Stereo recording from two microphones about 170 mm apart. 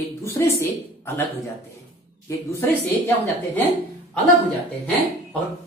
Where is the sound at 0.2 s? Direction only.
15° left (ahead or behind).